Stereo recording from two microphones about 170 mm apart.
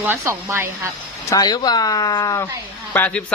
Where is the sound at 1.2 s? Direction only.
20° left (ahead or behind).